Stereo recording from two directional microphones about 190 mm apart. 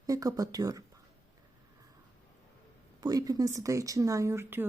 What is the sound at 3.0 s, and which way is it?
Speech, 20° right (ahead or behind).